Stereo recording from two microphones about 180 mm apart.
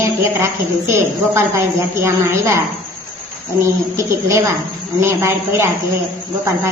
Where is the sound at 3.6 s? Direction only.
15° right (ahead or behind).